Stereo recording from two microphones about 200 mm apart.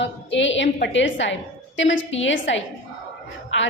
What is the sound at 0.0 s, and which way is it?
A woman's voice, 65° left (ahead or behind).